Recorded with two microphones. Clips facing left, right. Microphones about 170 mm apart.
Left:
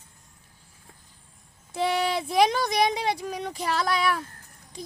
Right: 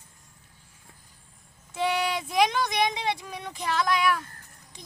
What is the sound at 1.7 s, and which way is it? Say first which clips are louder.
Speech: left 2 dB; 35° left (ahead or behind).